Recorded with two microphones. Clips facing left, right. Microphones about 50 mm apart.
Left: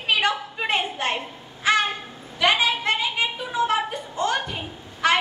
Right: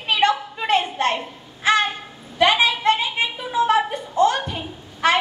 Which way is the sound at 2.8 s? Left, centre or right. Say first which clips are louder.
Right 4 dB; right.